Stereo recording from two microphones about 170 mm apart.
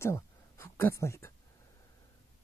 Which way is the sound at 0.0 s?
15° left (ahead or behind).